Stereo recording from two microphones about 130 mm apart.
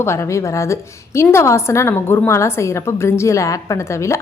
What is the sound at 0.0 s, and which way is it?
A woman's voice, 20° left (ahead or behind).